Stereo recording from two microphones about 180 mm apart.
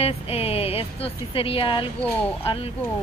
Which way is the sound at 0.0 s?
35° left (ahead or behind).